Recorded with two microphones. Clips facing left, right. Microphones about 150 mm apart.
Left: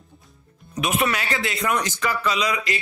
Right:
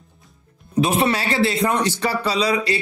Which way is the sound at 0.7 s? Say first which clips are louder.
Right 5 dB; 30° right (ahead or behind).